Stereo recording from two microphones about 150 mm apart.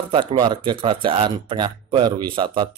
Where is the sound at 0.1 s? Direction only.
35° right (ahead or behind).